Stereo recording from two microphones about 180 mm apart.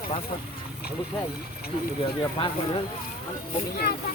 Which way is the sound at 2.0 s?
30° left (ahead or behind).